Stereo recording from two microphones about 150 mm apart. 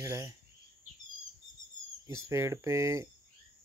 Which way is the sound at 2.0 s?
20° right (ahead or behind).